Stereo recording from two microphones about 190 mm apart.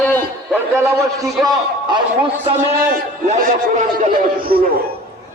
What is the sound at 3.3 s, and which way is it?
A man's voice, 40° right (ahead or behind).